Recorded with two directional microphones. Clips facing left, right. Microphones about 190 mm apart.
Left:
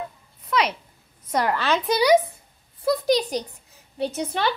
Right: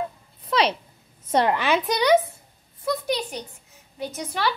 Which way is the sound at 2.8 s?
35° left (ahead or behind).